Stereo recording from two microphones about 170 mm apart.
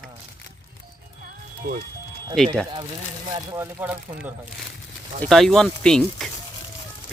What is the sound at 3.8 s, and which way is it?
Speech, 10° right (ahead or behind).